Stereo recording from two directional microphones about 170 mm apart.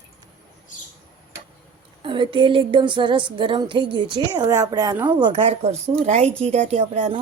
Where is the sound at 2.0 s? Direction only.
30° right (ahead or behind).